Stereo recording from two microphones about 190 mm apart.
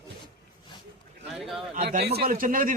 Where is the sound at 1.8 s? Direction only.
55° right (ahead or behind).